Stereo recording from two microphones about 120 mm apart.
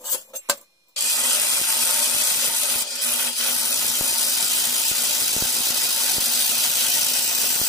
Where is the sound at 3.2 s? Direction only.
5° left (ahead or behind).